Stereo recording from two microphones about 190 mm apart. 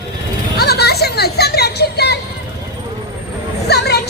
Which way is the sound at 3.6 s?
60° left (ahead or behind).